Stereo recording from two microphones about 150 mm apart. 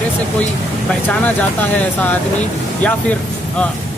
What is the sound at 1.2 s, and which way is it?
Speech, 10° left (ahead or behind).